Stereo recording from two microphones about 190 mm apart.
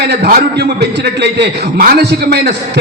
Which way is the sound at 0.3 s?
55° right (ahead or behind).